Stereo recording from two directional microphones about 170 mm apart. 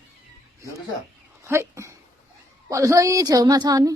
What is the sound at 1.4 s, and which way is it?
A woman's voice, 15° right (ahead or behind).